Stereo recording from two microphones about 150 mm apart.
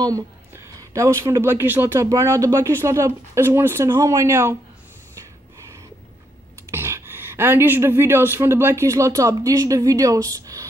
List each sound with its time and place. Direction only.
0.7 s speech: 20° right (ahead or behind)
6.7 s speech: 15° right (ahead or behind)